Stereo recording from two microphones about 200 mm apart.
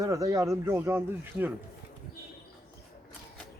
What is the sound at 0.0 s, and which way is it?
Speech, 15° right (ahead or behind).